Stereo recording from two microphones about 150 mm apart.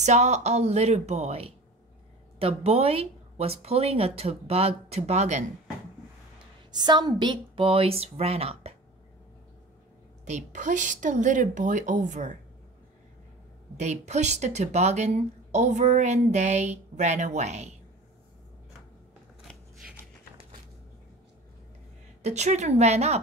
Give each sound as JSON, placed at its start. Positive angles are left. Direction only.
{"t": 0.0, "sound": "speech", "side_deg": -50}
{"t": 6.8, "sound": "speech", "side_deg": -30}
{"t": 10.2, "sound": "speech", "side_deg": -50}
{"t": 13.7, "sound": "speech", "side_deg": -50}
{"t": 22.2, "sound": "speech", "side_deg": -50}